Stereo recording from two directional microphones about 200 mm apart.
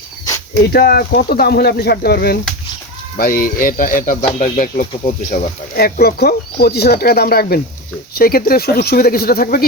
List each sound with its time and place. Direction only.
0.6 s speech: 50° left (ahead or behind)
5.3 s speech: 50° left (ahead or behind)